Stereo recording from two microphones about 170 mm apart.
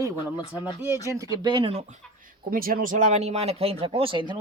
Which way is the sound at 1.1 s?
20° right (ahead or behind).